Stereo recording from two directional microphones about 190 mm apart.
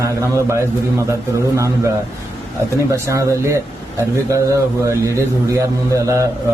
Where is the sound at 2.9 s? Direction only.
15° right (ahead or behind).